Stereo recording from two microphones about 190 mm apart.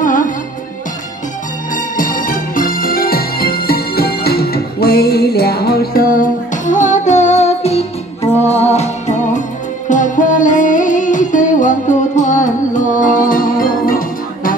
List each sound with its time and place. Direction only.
0.0 s music: 45° left (ahead or behind)
2.0 s music: 45° left (ahead or behind)